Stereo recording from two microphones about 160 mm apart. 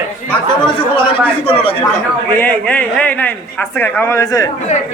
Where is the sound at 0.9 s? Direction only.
35° left (ahead or behind).